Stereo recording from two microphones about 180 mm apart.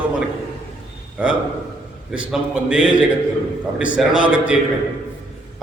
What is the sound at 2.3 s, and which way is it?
Mantra, 5° right (ahead or behind).